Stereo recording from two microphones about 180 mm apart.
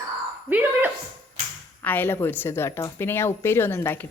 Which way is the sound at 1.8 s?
10° left (ahead or behind).